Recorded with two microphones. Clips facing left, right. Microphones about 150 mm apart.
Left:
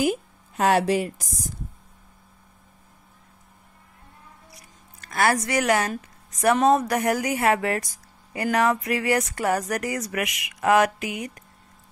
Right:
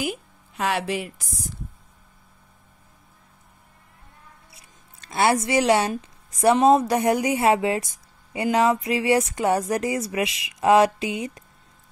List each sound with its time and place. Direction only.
0.0 s a woman's voice: 40° left (ahead or behind)
4.6 s a woman's voice: 25° right (ahead or behind)